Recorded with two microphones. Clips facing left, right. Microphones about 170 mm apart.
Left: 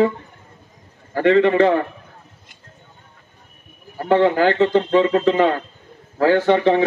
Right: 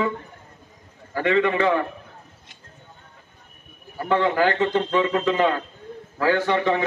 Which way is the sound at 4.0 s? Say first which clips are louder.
Left 5 dB; 35° left (ahead or behind).